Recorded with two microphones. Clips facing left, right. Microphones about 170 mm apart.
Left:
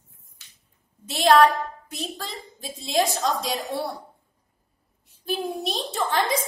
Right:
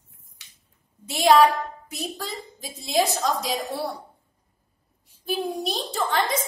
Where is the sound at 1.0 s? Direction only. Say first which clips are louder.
Even; 10° right (ahead or behind).